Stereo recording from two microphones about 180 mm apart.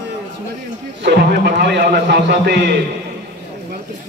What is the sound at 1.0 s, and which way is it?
A man's voice, 65° right (ahead or behind).